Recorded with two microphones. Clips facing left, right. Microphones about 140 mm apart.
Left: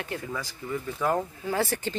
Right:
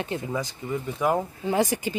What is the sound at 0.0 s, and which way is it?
A woman's voice, 20° right (ahead or behind).